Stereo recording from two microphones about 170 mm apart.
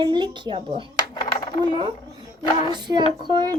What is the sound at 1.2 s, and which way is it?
Coin, 25° left (ahead or behind).